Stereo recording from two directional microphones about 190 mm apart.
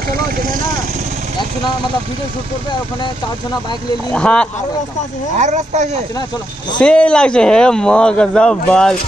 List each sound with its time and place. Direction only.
4.1 s a man's voice: 5° left (ahead or behind)
5.4 s speech: 35° right (ahead or behind)
6.8 s a man's voice: 5° left (ahead or behind)